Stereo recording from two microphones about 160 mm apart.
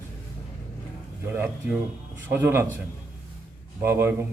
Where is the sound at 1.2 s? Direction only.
15° right (ahead or behind).